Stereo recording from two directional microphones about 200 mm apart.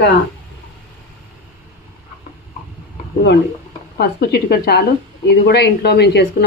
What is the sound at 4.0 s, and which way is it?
A woman's voice, 50° left (ahead or behind).